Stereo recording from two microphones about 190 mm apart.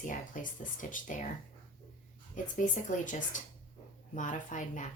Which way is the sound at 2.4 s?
45° left (ahead or behind).